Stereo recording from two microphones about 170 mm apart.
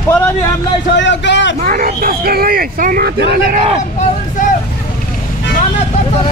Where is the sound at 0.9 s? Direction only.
90° left.